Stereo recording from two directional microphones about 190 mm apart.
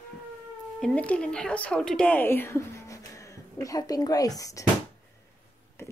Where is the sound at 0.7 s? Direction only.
5° left (ahead or behind).